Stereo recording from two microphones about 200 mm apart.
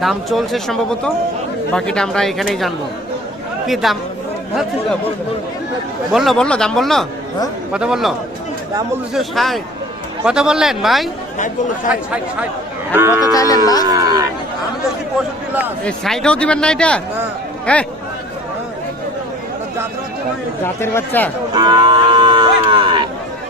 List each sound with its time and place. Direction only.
0.0 s speech: centre (ahead or behind)
6.1 s speech: centre (ahead or behind)
9.1 s speech: centre (ahead or behind)
11.3 s speech: 40° left (ahead or behind)
12.9 s speech: 10° right (ahead or behind)
13.2 s speech: 20° left (ahead or behind)
13.8 s speech: 20° right (ahead or behind)
15.8 s speech: centre (ahead or behind)
20.6 s speech: 10° left (ahead or behind)
21.5 s cattle: 20° right (ahead or behind)